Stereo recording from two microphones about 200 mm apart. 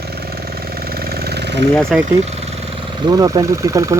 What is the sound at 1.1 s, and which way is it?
Vehicle, 50° right (ahead or behind).